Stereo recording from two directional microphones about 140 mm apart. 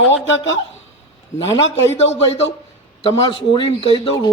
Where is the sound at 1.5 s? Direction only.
50° left (ahead or behind).